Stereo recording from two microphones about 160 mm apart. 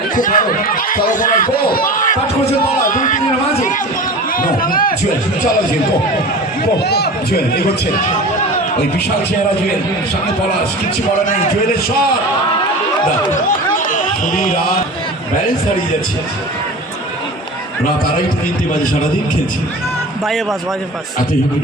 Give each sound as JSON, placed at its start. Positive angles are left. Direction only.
{"t": 0.2, "sound": "speech", "side_deg": 55}
{"t": 4.4, "sound": "speech", "side_deg": 60}
{"t": 6.8, "sound": "a man's voice", "side_deg": 90}
{"t": 13.3, "sound": "run", "side_deg": 55}
{"t": 20.2, "sound": "a man's voice", "side_deg": 0}